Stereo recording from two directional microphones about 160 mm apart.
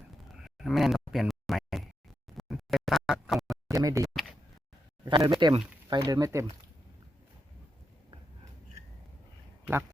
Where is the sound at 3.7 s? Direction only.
20° right (ahead or behind).